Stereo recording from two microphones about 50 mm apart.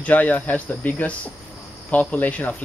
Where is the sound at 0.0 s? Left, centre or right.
Left.